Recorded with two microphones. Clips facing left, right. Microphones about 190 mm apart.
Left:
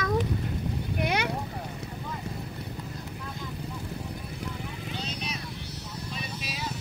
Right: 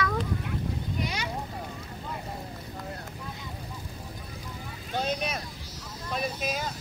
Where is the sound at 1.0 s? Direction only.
60° left (ahead or behind).